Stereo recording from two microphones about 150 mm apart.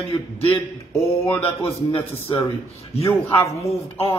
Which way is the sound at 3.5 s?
40° left (ahead or behind).